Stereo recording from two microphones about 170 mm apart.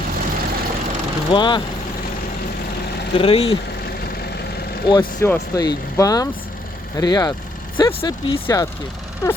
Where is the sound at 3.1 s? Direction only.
35° left (ahead or behind).